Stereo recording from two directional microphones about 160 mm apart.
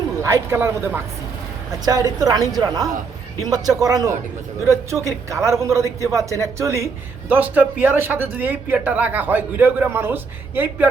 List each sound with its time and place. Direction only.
0.2 s a man's voice: 20° right (ahead or behind)